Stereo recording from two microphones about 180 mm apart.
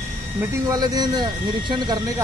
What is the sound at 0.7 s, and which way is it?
Speech, 20° right (ahead or behind).